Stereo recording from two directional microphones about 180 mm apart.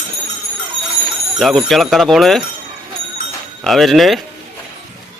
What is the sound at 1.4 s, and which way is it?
Speech, centre (ahead or behind).